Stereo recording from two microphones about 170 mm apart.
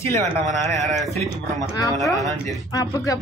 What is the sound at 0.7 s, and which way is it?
Speech, centre (ahead or behind).